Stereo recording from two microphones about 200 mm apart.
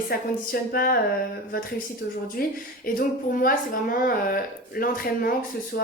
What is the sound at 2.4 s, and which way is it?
Speech, 50° left (ahead or behind).